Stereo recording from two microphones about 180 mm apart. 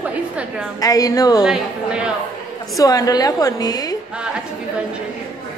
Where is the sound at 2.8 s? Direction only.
20° left (ahead or behind).